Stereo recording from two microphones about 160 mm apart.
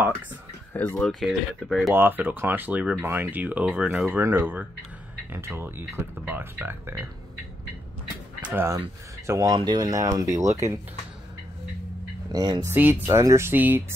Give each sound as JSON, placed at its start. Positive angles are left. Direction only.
{"t": 0.7, "sound": "speech", "side_deg": 10}
{"t": 1.2, "sound": "speech", "side_deg": 0}
{"t": 2.0, "sound": "speech", "side_deg": -10}
{"t": 8.4, "sound": "speech", "side_deg": -10}
{"t": 12.3, "sound": "speech", "side_deg": -25}
{"t": 12.6, "sound": "speech", "side_deg": -15}